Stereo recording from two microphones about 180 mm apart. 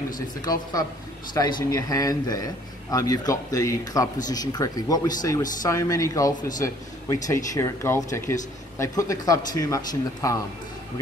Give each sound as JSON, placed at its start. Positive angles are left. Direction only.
{"t": 0.4, "sound": "a man's voice", "side_deg": 20}